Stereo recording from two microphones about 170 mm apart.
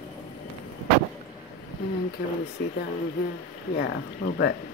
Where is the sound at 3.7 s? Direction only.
75° left (ahead or behind).